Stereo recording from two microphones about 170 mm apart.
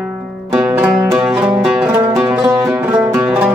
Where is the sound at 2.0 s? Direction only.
20° right (ahead or behind).